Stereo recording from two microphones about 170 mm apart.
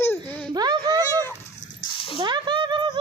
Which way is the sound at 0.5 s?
25° right (ahead or behind).